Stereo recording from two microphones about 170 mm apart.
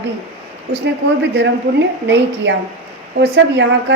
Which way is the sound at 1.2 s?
90° right.